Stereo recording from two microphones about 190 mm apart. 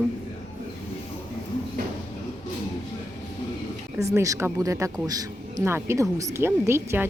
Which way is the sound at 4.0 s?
15° right (ahead or behind).